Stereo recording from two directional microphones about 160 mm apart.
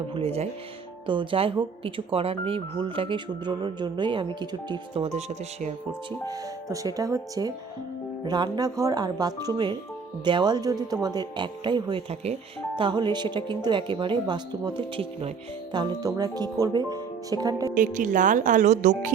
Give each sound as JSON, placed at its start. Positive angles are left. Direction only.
{"t": 0.1, "sound": "speech", "side_deg": -35}
{"t": 5.0, "sound": "speech", "side_deg": -45}
{"t": 6.1, "sound": "speech", "side_deg": -25}
{"t": 17.7, "sound": "speech", "side_deg": -55}